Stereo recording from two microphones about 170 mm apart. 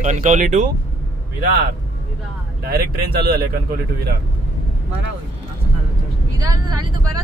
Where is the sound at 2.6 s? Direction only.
65° right (ahead or behind).